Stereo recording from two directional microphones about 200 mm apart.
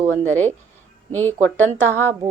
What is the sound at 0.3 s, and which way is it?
Speech, 10° left (ahead or behind).